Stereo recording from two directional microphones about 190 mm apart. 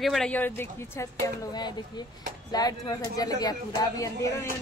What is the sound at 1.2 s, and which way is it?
Speech, 20° left (ahead or behind).